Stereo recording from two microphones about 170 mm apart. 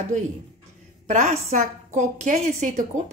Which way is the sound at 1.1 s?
45° right (ahead or behind).